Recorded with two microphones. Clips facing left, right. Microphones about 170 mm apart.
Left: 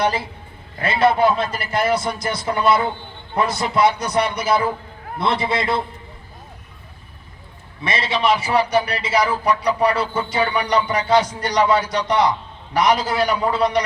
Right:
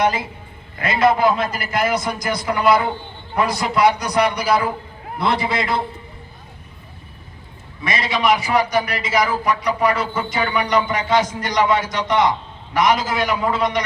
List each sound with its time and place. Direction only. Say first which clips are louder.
0.8 s a man's voice: even; 30° left (ahead or behind)
7.9 s a man's voice: right 1 dB; 30° left (ahead or behind)